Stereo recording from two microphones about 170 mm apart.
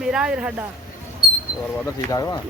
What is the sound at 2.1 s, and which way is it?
Speech, 20° left (ahead or behind).